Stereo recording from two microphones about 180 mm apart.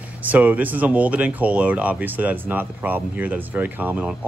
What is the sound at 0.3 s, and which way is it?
Speech, 10° right (ahead or behind).